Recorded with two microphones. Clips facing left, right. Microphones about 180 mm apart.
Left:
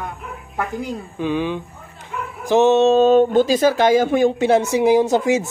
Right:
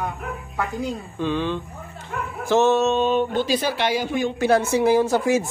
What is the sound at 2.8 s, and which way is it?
Speech, 40° left (ahead or behind).